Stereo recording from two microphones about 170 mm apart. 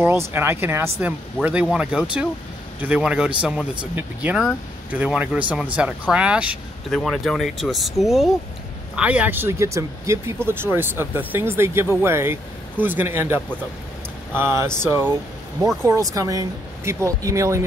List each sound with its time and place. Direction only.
0.3 s speech: 15° right (ahead or behind)